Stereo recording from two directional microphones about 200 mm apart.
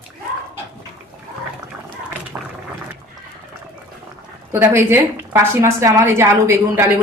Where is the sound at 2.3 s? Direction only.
10° right (ahead or behind).